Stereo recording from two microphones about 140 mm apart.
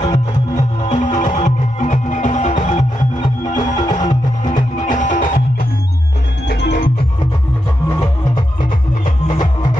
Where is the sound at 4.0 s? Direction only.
60° left (ahead or behind).